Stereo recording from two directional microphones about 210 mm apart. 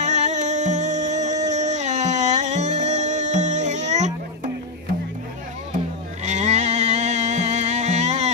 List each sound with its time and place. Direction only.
0.0 s music: 35° right (ahead or behind)
6.2 s music: 35° right (ahead or behind)